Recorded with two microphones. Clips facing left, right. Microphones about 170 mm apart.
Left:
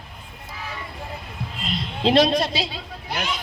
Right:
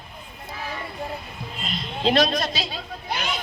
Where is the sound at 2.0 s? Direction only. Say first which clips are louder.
Left 3 dB; 25° left (ahead or behind).